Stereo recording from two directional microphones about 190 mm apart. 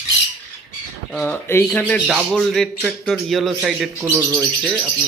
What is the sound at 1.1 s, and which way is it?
A man's voice, 10° left (ahead or behind).